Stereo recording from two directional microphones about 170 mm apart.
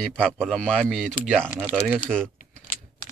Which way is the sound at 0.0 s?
5° left (ahead or behind).